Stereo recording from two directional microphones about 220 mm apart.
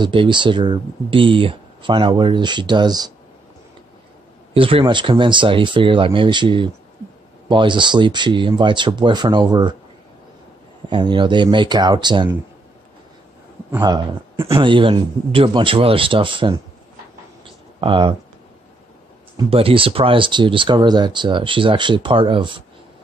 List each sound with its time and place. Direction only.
0.0 s speech: 20° right (ahead or behind)
4.6 s speech: 25° right (ahead or behind)
10.9 s speech: 20° right (ahead or behind)
13.7 s speech: 20° right (ahead or behind)
17.7 s speech: 20° right (ahead or behind)
19.3 s speech: 25° right (ahead or behind)